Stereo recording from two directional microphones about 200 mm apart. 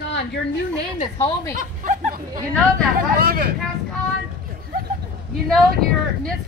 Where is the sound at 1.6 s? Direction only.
40° right (ahead or behind).